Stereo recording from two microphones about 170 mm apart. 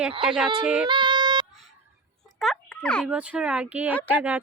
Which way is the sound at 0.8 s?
25° right (ahead or behind).